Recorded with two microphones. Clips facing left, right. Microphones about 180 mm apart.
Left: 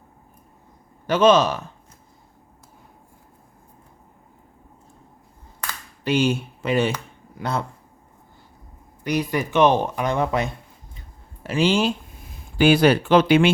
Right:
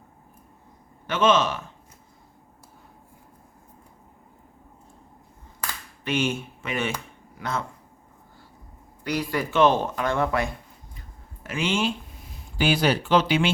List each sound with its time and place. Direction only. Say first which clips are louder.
1.0 s speech: left 5 dB; 40° left (ahead or behind)
6.1 s speech: left 5 dB; 35° left (ahead or behind)
9.0 s speech: left 3 dB; 20° left (ahead or behind)
11.4 s speech: left 6 dB; 30° left (ahead or behind); by 13.5 s 55° left (ahead or behind)